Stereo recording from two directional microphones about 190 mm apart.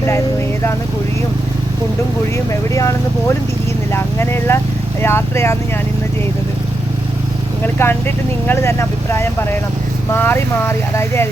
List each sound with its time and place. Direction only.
2.5 s speech: 15° left (ahead or behind)
7.8 s speech: 10° left (ahead or behind)